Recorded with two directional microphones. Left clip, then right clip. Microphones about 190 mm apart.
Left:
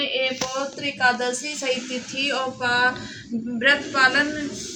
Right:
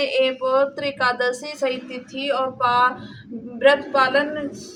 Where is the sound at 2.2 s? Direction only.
15° right (ahead or behind).